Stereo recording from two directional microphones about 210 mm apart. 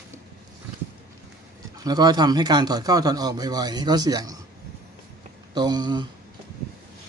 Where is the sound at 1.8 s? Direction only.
20° right (ahead or behind).